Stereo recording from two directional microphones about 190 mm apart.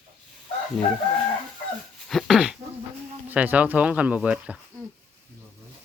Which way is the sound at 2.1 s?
Centre (ahead or behind).